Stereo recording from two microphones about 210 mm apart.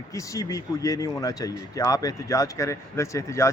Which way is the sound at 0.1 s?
15° left (ahead or behind).